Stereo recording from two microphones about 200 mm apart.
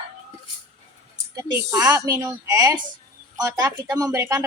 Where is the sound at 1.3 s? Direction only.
15° right (ahead or behind).